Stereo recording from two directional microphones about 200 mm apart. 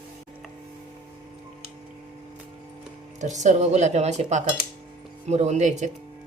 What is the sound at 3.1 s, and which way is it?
Speech, 35° right (ahead or behind).